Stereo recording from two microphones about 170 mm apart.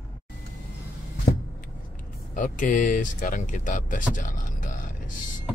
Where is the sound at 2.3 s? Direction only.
50° left (ahead or behind).